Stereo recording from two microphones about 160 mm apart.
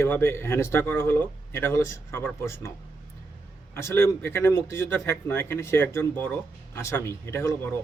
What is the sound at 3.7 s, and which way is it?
Speech, 15° left (ahead or behind).